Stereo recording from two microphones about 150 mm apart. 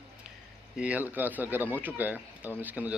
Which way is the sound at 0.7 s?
10° right (ahead or behind).